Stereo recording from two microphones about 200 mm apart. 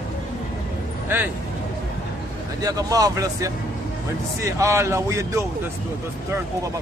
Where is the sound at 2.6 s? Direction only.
20° right (ahead or behind).